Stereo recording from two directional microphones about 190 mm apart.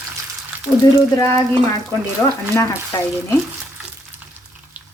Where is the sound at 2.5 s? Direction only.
15° left (ahead or behind).